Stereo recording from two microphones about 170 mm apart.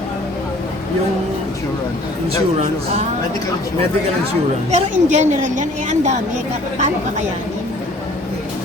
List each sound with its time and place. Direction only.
2.6 s speech: 40° right (ahead or behind)
4.7 s a woman's voice: 45° right (ahead or behind)